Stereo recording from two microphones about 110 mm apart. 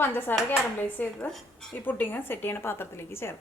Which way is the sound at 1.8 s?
15° left (ahead or behind).